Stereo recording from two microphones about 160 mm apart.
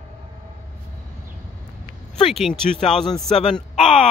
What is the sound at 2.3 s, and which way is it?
Speech, centre (ahead or behind).